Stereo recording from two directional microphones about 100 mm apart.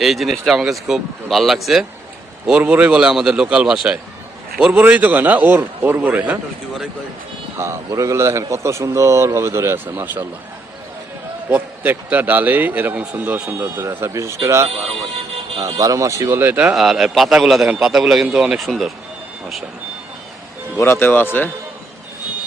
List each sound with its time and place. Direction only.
0.0 s a man's voice: centre (ahead or behind)
2.5 s a man's voice: 10° right (ahead or behind)
7.5 s a man's voice: 25° right (ahead or behind)
11.4 s a man's voice: 15° right (ahead or behind)
16.4 s a man's voice: 15° right (ahead or behind)
16.7 s a man's voice: centre (ahead or behind)
20.7 s speech: 25° left (ahead or behind)